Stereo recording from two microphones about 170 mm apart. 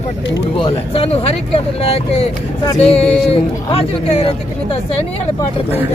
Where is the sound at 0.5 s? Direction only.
35° left (ahead or behind).